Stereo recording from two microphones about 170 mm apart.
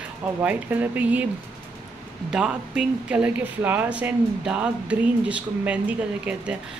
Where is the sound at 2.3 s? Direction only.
5° right (ahead or behind).